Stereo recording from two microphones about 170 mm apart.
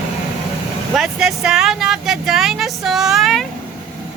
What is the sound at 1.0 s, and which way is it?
Vehicle, centre (ahead or behind).